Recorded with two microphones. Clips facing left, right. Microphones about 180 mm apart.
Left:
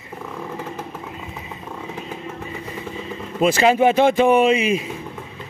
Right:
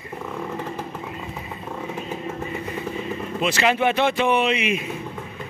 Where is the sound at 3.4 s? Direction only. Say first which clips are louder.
Left 6 dB; 35° left (ahead or behind).